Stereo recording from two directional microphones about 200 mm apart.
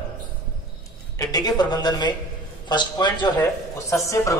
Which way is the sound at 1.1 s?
20° left (ahead or behind).